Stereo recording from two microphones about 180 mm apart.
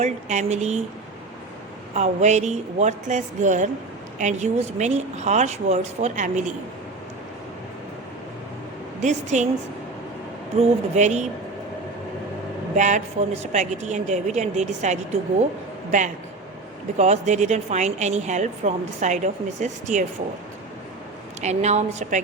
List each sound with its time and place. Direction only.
0.0 s a woman's voice: 40° right (ahead or behind)
1.9 s a woman's voice: 40° right (ahead or behind)
9.0 s a woman's voice: 40° right (ahead or behind)
10.6 s a woman's voice: 40° right (ahead or behind)
12.7 s a woman's voice: 40° right (ahead or behind)
21.4 s a woman's voice: 40° right (ahead or behind)